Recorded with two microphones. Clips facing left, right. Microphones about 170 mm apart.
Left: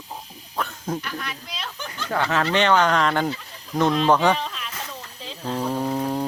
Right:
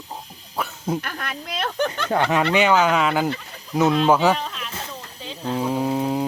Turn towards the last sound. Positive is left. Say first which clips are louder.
# right 2 dB
turn(degrees=-5)  # may be behind; listen again after turning